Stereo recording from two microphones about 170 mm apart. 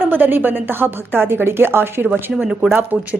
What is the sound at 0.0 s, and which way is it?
A woman's voice, 10° right (ahead or behind).